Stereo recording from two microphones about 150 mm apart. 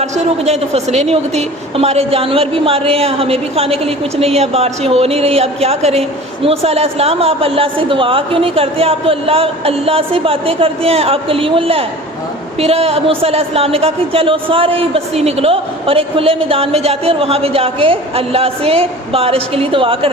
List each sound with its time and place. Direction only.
0.0 s a woman's voice: 45° right (ahead or behind)